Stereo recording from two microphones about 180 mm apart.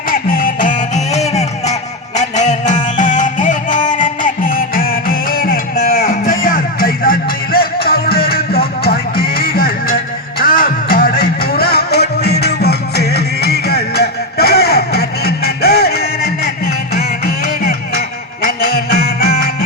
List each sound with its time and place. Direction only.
0.1 s music: 50° left (ahead or behind)